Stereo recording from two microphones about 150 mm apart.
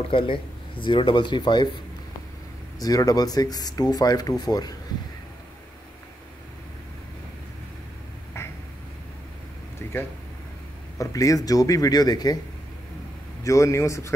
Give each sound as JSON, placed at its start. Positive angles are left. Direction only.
{"t": 0.1, "sound": "speech", "side_deg": 35}
{"t": 2.8, "sound": "speech", "side_deg": 25}
{"t": 8.3, "sound": "a sound", "side_deg": 20}
{"t": 11.0, "sound": "speech", "side_deg": 25}
{"t": 13.4, "sound": "speech", "side_deg": 20}